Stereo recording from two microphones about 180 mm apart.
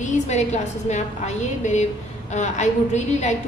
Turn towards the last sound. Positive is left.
turn(degrees=40)  # may be behind; listen again after turning